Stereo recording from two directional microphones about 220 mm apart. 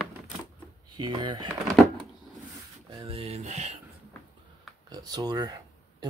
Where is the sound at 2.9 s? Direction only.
25° right (ahead or behind).